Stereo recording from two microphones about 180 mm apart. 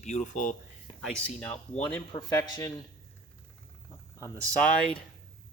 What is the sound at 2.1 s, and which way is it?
Speech, 20° left (ahead or behind).